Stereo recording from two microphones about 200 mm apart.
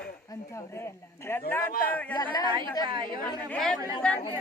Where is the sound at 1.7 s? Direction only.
45° left (ahead or behind).